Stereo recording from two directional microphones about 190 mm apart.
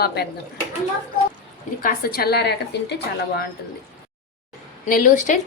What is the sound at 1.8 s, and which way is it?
A woman's voice, 55° left (ahead or behind).